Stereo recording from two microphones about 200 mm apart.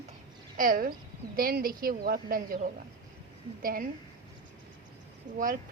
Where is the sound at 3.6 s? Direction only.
45° right (ahead or behind).